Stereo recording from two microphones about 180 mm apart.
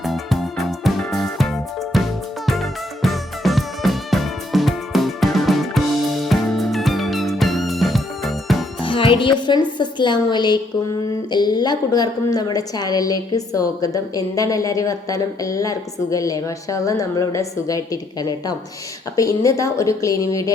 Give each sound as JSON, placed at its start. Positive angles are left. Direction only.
{"t": 0.0, "sound": "music", "side_deg": 0}
{"t": 1.9, "sound": "music", "side_deg": 0}
{"t": 8.8, "sound": "a woman's voice", "side_deg": 30}